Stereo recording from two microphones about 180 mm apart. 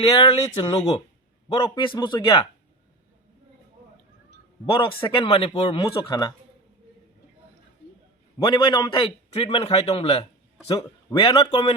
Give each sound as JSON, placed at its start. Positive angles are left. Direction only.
{"t": 0.0, "sound": "speech", "side_deg": 30}
{"t": 5.0, "sound": "speech", "side_deg": 30}
{"t": 8.4, "sound": "a man's voice", "side_deg": 25}